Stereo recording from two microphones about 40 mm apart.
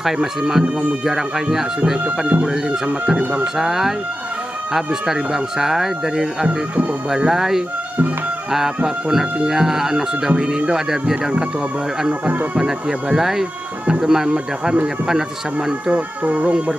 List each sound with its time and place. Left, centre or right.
0.0 s speech: centre
2.0 s speech: right
3.5 s speech: centre
12.1 s speech: right
12.5 s speech: centre
15.9 s speech: right